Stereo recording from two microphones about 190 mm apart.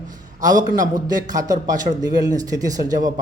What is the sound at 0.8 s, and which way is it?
A man's voice, 20° right (ahead or behind).